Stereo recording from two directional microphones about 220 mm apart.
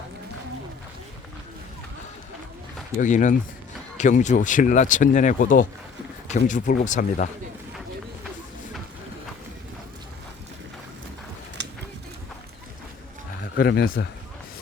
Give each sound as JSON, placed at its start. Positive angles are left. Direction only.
{"t": 3.0, "sound": "speech", "side_deg": 35}
{"t": 13.6, "sound": "speech", "side_deg": 45}